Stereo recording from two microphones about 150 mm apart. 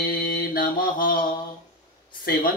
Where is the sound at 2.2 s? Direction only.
70° left (ahead or behind).